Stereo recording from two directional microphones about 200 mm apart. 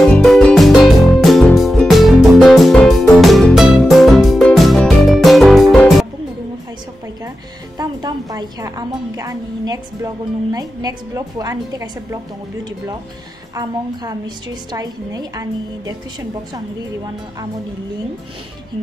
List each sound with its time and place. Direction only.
0.0 s music: centre (ahead or behind)
7.7 s a woman's voice: 20° right (ahead or behind)
13.6 s a woman's voice: 20° right (ahead or behind)